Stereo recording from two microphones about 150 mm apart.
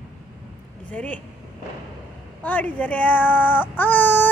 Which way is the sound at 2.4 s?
10° left (ahead or behind).